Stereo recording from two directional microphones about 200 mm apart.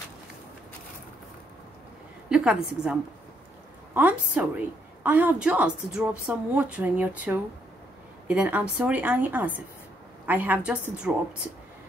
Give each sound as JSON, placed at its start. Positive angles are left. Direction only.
{"t": 2.2, "sound": "a woman's voice", "side_deg": -5}